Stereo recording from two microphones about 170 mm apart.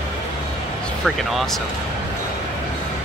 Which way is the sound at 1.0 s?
Centre (ahead or behind).